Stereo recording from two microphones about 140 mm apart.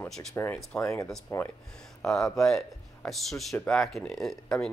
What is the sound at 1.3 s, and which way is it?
Speech, 20° left (ahead or behind).